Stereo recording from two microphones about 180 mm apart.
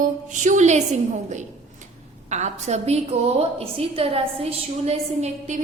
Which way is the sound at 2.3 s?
40° right (ahead or behind).